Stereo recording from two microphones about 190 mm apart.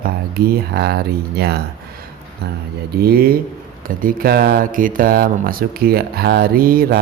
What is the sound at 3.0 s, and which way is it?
Speech, 55° right (ahead or behind).